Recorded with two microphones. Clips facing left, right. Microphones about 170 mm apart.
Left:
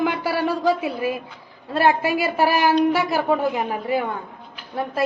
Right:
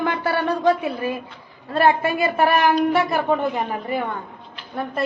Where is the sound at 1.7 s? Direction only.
5° left (ahead or behind).